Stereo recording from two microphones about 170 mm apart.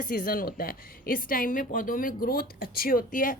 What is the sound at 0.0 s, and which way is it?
A woman's voice, 55° left (ahead or behind).